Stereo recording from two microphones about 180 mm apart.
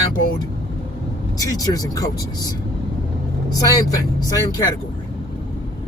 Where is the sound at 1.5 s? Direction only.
20° left (ahead or behind).